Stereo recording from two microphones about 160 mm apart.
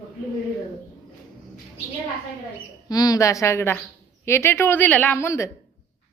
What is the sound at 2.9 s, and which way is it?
A woman's voice, 20° left (ahead or behind).